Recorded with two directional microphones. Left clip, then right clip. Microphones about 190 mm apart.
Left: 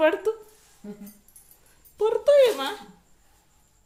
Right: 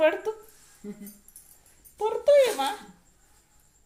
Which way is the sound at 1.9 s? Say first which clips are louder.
Left 2 dB; 25° left (ahead or behind).